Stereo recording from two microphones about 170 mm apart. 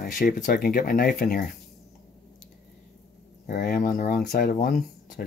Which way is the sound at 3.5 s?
55° left (ahead or behind).